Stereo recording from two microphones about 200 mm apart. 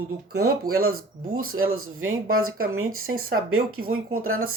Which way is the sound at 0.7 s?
90° right.